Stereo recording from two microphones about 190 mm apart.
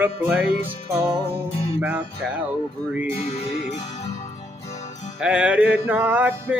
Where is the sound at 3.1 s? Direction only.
35° left (ahead or behind).